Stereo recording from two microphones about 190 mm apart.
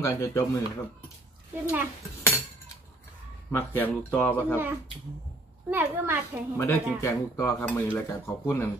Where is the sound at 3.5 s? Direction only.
10° left (ahead or behind).